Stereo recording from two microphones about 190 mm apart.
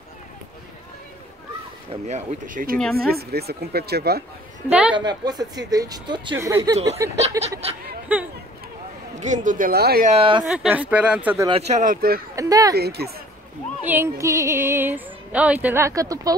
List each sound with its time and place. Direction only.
1.9 s speech: 40° right (ahead or behind); by 4.2 s 60° right (ahead or behind)
4.6 s music: 5° right (ahead or behind)
4.9 s speech: 20° right (ahead or behind)
7.6 s speech: 30° right (ahead or behind)
8.1 s music: 10° right (ahead or behind)
9.2 s speech: 40° right (ahead or behind)
10.0 s speech: 30° right (ahead or behind)
10.4 s music: 5° right (ahead or behind)
11.4 s speech: 30° right (ahead or behind); by 12.2 s 50° right (ahead or behind)
12.4 s speech: 20° right (ahead or behind)
12.7 s speech: 55° right (ahead or behind)
13.8 s music: 10° right (ahead or behind)